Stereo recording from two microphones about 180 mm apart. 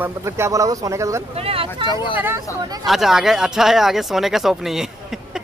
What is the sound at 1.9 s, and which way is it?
Speech, 25° left (ahead or behind).